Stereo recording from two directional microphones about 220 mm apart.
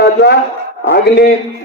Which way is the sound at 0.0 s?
50° left (ahead or behind).